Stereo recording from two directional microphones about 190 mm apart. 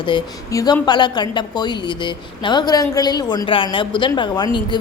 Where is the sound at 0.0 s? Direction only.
25° left (ahead or behind).